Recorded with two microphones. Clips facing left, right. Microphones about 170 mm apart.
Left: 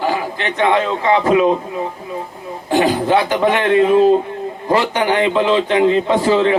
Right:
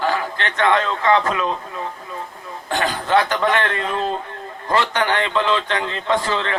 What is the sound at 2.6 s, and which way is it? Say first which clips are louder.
A man's voice: left 8 dB; 15° left (ahead or behind).